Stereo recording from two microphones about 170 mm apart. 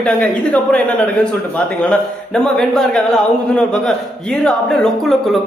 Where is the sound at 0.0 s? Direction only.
5° left (ahead or behind).